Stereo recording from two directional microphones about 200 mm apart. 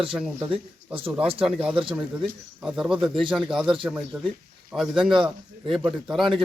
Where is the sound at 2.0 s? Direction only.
5° right (ahead or behind).